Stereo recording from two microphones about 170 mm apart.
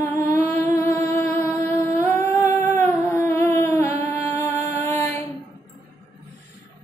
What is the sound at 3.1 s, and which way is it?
Music, 15° left (ahead or behind).